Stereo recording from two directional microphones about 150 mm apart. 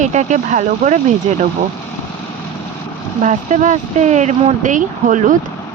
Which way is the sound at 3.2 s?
55° right (ahead or behind).